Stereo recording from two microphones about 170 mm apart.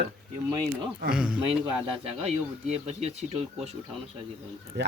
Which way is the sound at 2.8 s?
40° right (ahead or behind).